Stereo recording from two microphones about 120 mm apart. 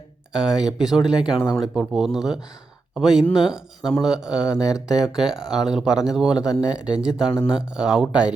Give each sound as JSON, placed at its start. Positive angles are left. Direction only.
{"t": 0.3, "sound": "speech", "side_deg": -5}
{"t": 4.5, "sound": "speech", "side_deg": 30}
{"t": 4.9, "sound": "speech", "side_deg": -5}
{"t": 6.4, "sound": "speech", "side_deg": 30}
{"t": 6.8, "sound": "speech", "side_deg": -5}